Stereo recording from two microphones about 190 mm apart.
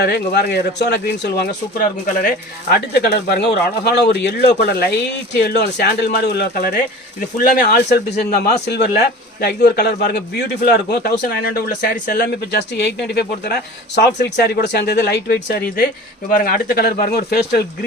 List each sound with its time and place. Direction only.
0.0 s a man's voice: 60° left (ahead or behind)
2.6 s a man's voice: 55° left (ahead or behind)